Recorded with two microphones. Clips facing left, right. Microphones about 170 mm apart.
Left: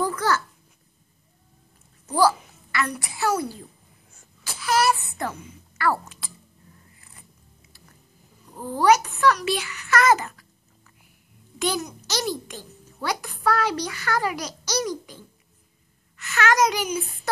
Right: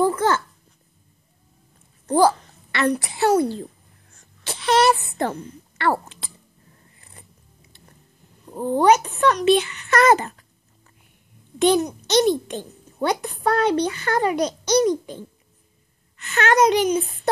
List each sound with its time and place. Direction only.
0.0 s a child's voice: 25° right (ahead or behind)
2.7 s a child's voice: 30° right (ahead or behind)
4.5 s a sound: 25° right (ahead or behind)
5.1 s speech: 25° right (ahead or behind)
8.5 s a child's voice: 25° right (ahead or behind)
11.5 s a child's voice: 25° right (ahead or behind)